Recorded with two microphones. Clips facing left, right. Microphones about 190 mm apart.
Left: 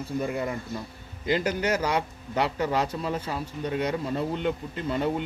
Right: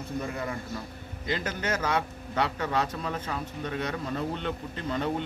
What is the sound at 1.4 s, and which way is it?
A man's voice, 15° left (ahead or behind).